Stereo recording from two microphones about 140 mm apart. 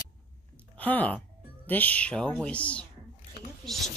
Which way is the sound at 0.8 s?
10° left (ahead or behind).